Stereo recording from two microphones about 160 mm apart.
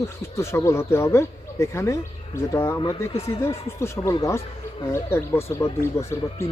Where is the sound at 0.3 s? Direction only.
15° left (ahead or behind).